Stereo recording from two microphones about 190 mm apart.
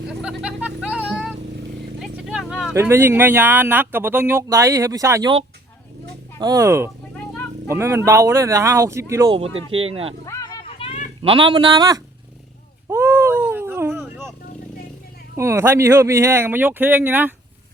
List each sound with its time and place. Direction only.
0.1 s vehicle: 5° right (ahead or behind)
2.7 s speech: 10° right (ahead or behind)
6.4 s speech: 15° right (ahead or behind)
9.7 s speech: 30° right (ahead or behind)
10.2 s a sound: 20° left (ahead or behind)
11.2 s speech: 25° right (ahead or behind)
12.9 s a sound: 10° right (ahead or behind)
15.4 s speech: 15° right (ahead or behind)